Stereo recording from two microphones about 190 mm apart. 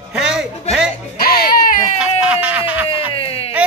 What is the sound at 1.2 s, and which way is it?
Baby cry, 50° left (ahead or behind).